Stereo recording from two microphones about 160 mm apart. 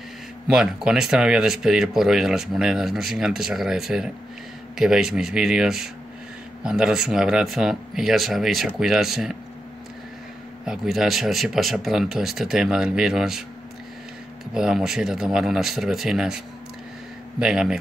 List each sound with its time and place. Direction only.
0.5 s speech: 5° right (ahead or behind)
10.6 s speech: 5° right (ahead or behind)
14.5 s speech: 5° right (ahead or behind)
17.4 s speech: 5° right (ahead or behind)